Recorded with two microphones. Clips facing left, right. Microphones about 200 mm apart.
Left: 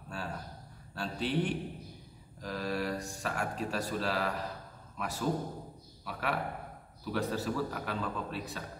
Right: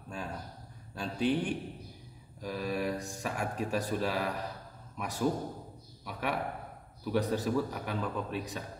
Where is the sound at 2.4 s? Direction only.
15° right (ahead or behind).